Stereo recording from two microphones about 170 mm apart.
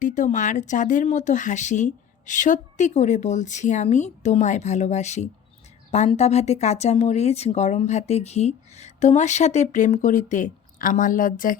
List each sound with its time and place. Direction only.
0.0 s speech: 45° left (ahead or behind)